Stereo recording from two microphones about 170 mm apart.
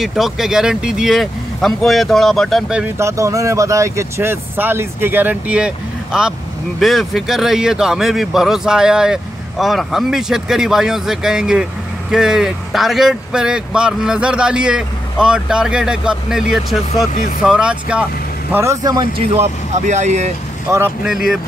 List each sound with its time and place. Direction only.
0.0 s speech: centre (ahead or behind)
3.0 s speech: 15° right (ahead or behind)
18.5 s speech: 15° right (ahead or behind)
19.3 s speech: 40° right (ahead or behind)
20.7 s speech: 15° right (ahead or behind)
21.0 s speech: 5° right (ahead or behind)